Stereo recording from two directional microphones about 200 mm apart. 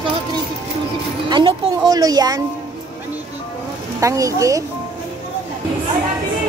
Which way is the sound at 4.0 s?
15° right (ahead or behind).